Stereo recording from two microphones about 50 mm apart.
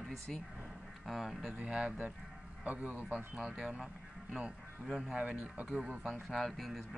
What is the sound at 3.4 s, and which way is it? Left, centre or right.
Speech, centre.